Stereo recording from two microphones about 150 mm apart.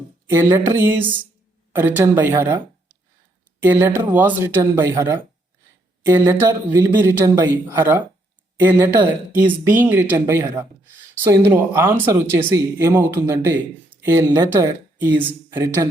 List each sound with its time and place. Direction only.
0.3 s speech: 15° right (ahead or behind)
3.6 s speech: 15° right (ahead or behind)